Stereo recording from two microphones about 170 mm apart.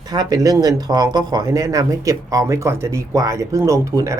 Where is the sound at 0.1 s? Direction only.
20° right (ahead or behind).